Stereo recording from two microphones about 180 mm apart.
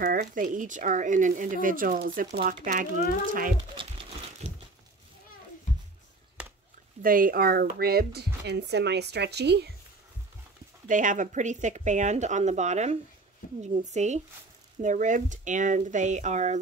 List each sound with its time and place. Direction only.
0.0 s speech: 50° right (ahead or behind)
3.7 s crumpling: 30° right (ahead or behind)
6.4 s a sound: 5° right (ahead or behind)
7.0 s speech: 50° right (ahead or behind); by 9.7 s 70° right (ahead or behind)
10.9 s speech: 45° right (ahead or behind)